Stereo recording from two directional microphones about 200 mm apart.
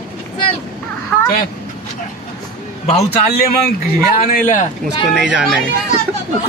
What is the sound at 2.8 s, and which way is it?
A man's voice, 30° left (ahead or behind).